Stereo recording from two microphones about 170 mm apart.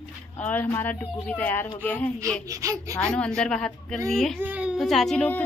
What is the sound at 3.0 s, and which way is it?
A woman's voice, 5° left (ahead or behind).